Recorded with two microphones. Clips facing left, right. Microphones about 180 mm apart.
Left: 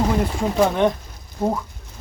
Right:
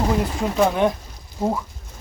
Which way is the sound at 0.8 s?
5° right (ahead or behind).